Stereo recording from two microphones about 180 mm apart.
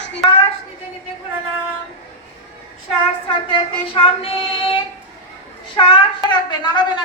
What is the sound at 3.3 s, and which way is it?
Child singing, 30° left (ahead or behind).